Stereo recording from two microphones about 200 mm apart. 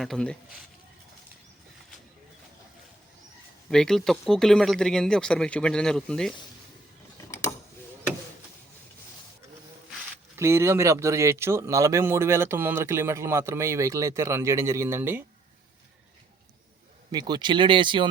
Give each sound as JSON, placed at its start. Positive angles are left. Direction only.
{"t": 0.0, "sound": "speech", "side_deg": 5}
{"t": 3.7, "sound": "speech", "side_deg": 5}
{"t": 10.3, "sound": "speech", "side_deg": -15}
{"t": 17.1, "sound": "speech", "side_deg": -20}